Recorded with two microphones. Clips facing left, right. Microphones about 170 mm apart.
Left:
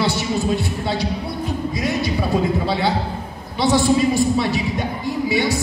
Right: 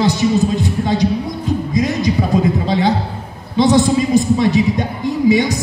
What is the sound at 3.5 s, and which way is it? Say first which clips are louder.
A woman's voice: right 4 dB; 20° right (ahead or behind).